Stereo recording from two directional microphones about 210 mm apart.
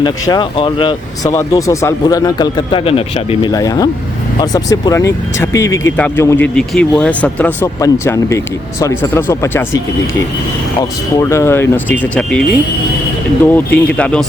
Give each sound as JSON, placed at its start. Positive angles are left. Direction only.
{"t": 0.0, "sound": "speech", "side_deg": 20}
{"t": 11.2, "sound": "speech", "side_deg": 15}